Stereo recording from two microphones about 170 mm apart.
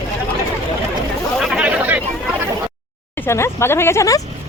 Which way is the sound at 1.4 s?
5° right (ahead or behind).